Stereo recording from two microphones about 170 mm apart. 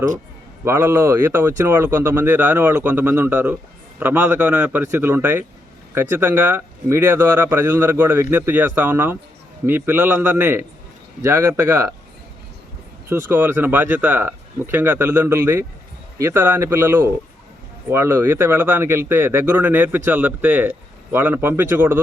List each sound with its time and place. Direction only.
0.6 s speech: 15° right (ahead or behind)
13.1 s speech: 15° right (ahead or behind)